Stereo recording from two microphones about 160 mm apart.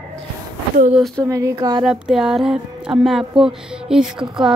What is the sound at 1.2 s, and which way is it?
Speech, 20° right (ahead or behind).